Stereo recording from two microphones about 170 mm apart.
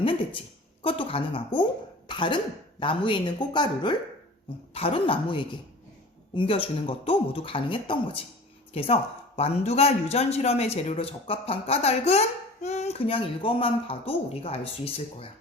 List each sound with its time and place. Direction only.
0.8 s speech: 30° left (ahead or behind)